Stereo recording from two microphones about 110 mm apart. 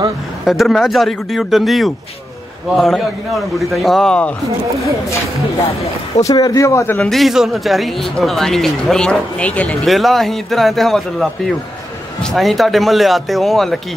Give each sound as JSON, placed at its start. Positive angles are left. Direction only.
{"t": 0.5, "sound": "speech", "side_deg": 0}
{"t": 6.2, "sound": "speech", "side_deg": 35}
{"t": 7.0, "sound": "speech", "side_deg": 0}
{"t": 9.8, "sound": "speech", "side_deg": 0}